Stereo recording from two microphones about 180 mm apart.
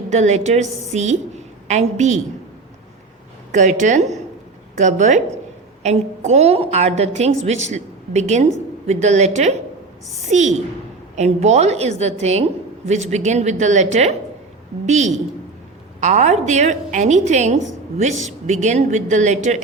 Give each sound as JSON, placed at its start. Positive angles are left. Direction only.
{"t": 0.1, "sound": "a woman's voice", "side_deg": -40}
{"t": 3.5, "sound": "a woman's voice", "side_deg": -45}